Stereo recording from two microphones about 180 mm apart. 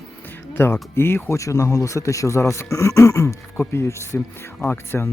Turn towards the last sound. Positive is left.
turn(degrees=15)  # may be behind; listen again after turning